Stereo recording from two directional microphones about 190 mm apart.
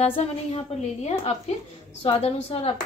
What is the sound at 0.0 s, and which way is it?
A woman's voice, 30° left (ahead or behind).